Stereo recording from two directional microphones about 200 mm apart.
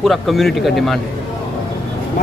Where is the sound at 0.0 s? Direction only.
Centre (ahead or behind).